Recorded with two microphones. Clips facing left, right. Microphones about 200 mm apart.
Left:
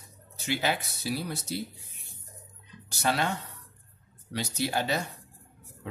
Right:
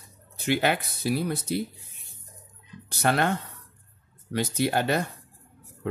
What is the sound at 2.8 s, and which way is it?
Speech, 55° right (ahead or behind).